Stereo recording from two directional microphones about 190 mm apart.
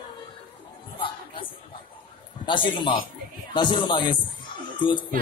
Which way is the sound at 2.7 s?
25° left (ahead or behind).